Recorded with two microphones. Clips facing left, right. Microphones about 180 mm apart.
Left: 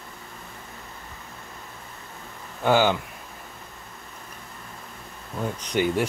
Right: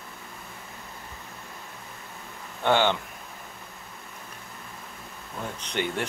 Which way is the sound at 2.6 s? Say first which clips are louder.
Left 3 dB; 10° left (ahead or behind).